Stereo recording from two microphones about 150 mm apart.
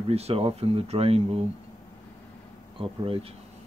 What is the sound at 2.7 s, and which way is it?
Speech, 40° right (ahead or behind).